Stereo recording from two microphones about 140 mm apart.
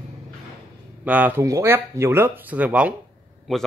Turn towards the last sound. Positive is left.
turn(degrees=0)  # may be behind; listen again after turning